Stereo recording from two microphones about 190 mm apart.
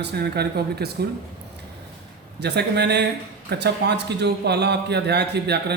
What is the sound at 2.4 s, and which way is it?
A man's voice, 60° right (ahead or behind).